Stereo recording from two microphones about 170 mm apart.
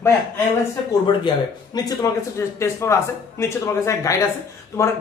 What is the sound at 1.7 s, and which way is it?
Speech, 20° left (ahead or behind).